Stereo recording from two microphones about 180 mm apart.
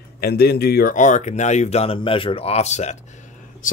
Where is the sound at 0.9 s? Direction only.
45° left (ahead or behind).